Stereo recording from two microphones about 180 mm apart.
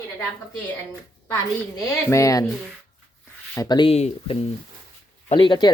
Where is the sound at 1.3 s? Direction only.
15° left (ahead or behind).